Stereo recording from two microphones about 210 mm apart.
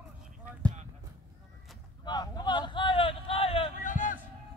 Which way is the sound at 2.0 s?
20° left (ahead or behind).